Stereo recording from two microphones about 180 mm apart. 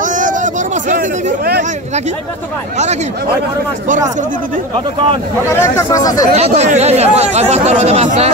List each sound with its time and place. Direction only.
0.0 s a sound: 45° right (ahead or behind)
5.5 s speech: 15° left (ahead or behind)
6.3 s speech: 35° right (ahead or behind)